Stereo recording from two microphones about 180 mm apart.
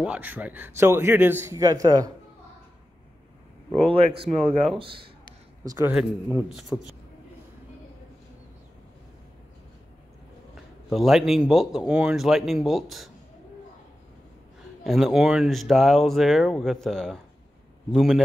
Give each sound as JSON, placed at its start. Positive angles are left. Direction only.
{"t": 0.0, "sound": "a man's voice", "side_deg": -10}
{"t": 3.9, "sound": "speech", "side_deg": -30}
{"t": 5.6, "sound": "a man's voice", "side_deg": -15}
{"t": 5.9, "sound": "speech", "side_deg": -5}
{"t": 10.5, "sound": "speech", "side_deg": 0}
{"t": 14.8, "sound": "speech", "side_deg": 0}